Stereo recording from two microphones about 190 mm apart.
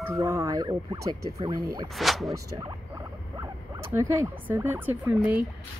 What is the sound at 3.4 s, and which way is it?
Speech, 15° right (ahead or behind).